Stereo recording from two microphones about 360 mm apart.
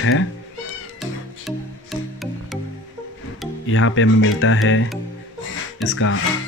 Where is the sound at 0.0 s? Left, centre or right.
Left.